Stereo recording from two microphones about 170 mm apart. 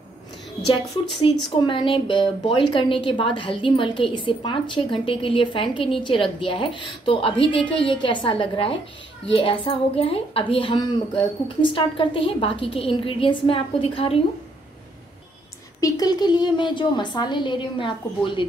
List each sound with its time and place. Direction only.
1.5 s a woman's voice: 25° left (ahead or behind)
15.8 s a woman's voice: 25° left (ahead or behind)